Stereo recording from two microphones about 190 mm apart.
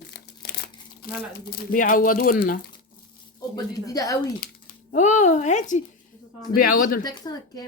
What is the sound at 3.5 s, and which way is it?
Speech, 20° left (ahead or behind).